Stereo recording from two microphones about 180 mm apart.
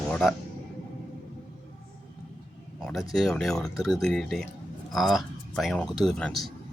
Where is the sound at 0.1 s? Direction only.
5° left (ahead or behind).